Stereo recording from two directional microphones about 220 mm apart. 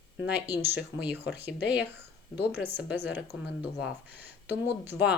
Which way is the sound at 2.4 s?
10° right (ahead or behind).